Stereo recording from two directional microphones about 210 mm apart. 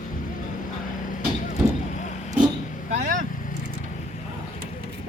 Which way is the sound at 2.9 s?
40° right (ahead or behind).